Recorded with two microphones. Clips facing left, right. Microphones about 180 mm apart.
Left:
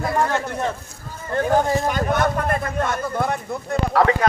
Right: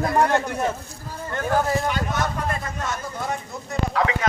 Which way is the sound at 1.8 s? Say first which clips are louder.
Left 5 dB; 50° left (ahead or behind).